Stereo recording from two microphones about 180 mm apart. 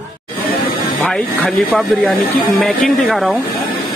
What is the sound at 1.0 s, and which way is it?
Speech, 5° left (ahead or behind).